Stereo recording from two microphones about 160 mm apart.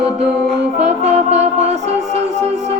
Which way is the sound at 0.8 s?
40° right (ahead or behind).